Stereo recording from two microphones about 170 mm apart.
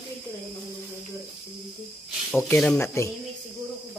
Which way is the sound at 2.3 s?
5° left (ahead or behind).